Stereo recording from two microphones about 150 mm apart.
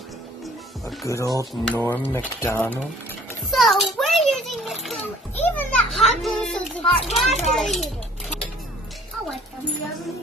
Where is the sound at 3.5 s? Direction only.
Centre (ahead or behind).